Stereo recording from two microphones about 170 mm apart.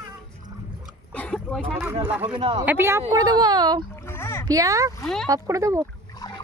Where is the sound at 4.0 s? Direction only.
15° left (ahead or behind).